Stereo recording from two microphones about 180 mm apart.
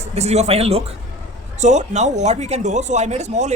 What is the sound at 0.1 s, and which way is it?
Speech, 35° right (ahead or behind).